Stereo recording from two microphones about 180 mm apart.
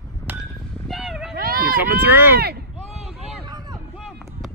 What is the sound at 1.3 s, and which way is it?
Run, 55° right (ahead or behind).